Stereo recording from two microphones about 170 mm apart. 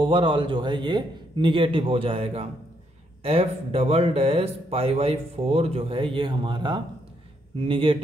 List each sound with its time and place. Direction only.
0.0 s a man's voice: 30° right (ahead or behind)